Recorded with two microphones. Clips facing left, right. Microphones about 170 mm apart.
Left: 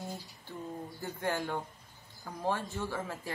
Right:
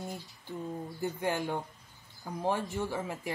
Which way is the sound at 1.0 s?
15° right (ahead or behind).